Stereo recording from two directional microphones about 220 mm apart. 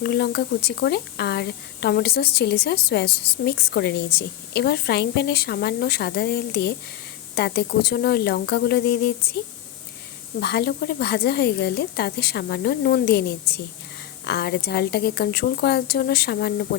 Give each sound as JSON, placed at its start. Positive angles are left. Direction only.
{"t": 0.0, "sound": "speech", "side_deg": 50}
{"t": 10.4, "sound": "speech", "side_deg": 50}